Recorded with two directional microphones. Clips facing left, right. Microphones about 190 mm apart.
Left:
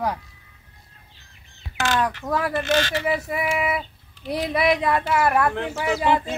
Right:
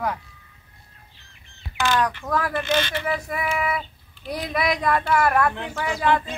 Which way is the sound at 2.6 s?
80° left.